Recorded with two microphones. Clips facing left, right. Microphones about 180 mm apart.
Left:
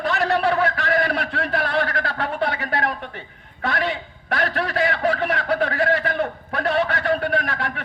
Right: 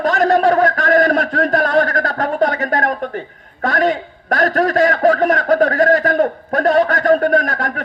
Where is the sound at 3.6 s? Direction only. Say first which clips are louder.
Right 8 dB; 45° right (ahead or behind).